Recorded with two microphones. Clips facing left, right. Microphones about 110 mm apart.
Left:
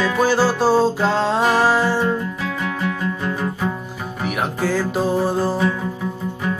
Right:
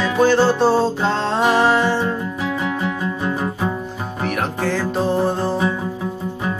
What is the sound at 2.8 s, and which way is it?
Music, 20° right (ahead or behind).